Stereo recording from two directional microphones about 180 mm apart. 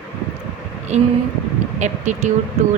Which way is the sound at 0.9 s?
40° right (ahead or behind).